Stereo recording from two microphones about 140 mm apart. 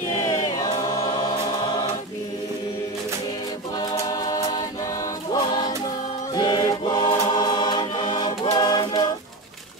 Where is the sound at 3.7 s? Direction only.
30° left (ahead or behind).